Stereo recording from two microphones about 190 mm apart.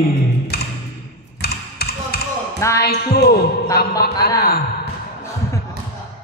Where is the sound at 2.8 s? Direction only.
55° left (ahead or behind).